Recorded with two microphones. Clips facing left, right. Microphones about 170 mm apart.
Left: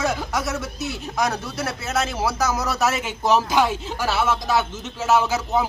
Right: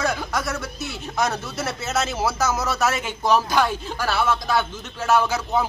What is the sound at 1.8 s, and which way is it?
Speech, 10° left (ahead or behind).